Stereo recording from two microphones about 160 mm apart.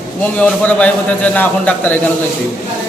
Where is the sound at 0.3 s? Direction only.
10° left (ahead or behind).